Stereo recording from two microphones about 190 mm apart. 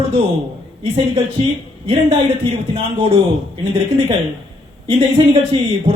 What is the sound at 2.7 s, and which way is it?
Speech, 30° right (ahead or behind).